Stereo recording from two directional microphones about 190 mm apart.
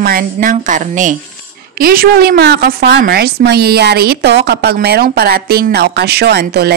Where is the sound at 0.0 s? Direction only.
50° right (ahead or behind).